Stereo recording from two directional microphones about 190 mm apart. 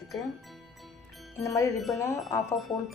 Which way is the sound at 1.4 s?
15° left (ahead or behind).